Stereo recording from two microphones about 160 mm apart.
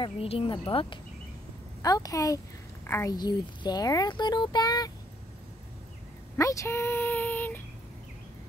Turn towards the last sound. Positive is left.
turn(degrees=10)  # may be behind; listen again after turning